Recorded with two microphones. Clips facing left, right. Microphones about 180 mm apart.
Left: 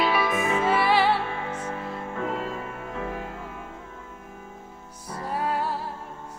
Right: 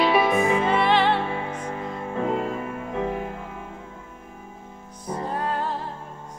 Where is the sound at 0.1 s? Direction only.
20° right (ahead or behind).